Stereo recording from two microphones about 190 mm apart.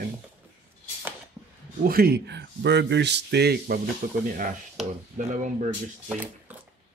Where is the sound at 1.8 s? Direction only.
50° right (ahead or behind).